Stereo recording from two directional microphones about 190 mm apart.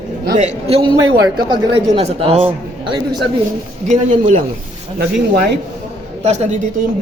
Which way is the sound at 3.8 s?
40° right (ahead or behind).